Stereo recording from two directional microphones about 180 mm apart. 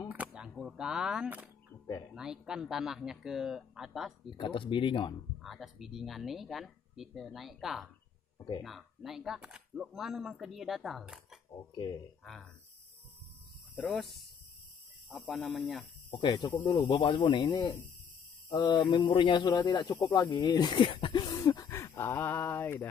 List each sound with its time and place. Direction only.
0.1 s speech: 5° right (ahead or behind)
4.3 s speech: 30° left (ahead or behind)
5.4 s speech: centre (ahead or behind)
12.2 s speech: centre (ahead or behind)
13.7 s speech: 5° left (ahead or behind)
15.0 s speech: centre (ahead or behind)
16.1 s speech: 25° left (ahead or behind)
17.5 s speech: 15° left (ahead or behind)